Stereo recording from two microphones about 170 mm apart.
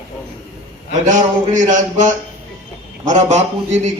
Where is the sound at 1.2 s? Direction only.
50° right (ahead or behind).